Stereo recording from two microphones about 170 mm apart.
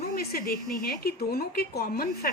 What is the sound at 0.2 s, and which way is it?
A woman's voice, 65° left (ahead or behind).